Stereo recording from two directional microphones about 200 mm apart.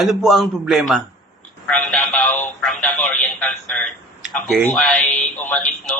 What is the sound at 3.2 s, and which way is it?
A man's voice, centre (ahead or behind).